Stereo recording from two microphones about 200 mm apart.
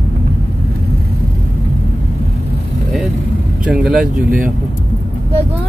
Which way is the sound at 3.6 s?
5° right (ahead or behind).